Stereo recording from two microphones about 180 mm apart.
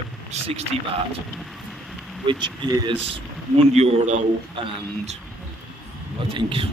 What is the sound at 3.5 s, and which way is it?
Speech, 35° right (ahead or behind).